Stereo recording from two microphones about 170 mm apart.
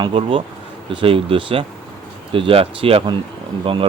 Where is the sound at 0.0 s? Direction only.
30° right (ahead or behind).